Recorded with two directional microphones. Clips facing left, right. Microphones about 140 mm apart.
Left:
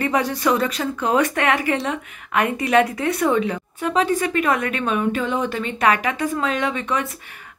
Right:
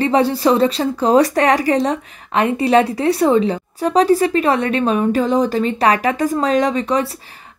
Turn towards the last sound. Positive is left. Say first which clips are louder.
# right 6 dB
turn(degrees=-35)  # may be behind; listen again after turning